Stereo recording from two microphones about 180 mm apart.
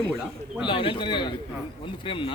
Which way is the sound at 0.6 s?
30° left (ahead or behind).